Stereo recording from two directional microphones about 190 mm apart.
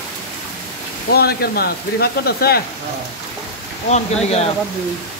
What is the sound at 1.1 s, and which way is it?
Speech, 55° left (ahead or behind).